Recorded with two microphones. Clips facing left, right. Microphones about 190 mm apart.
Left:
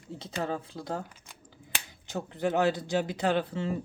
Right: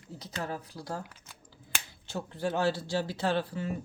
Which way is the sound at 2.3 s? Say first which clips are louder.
Left 3 dB; 20° left (ahead or behind).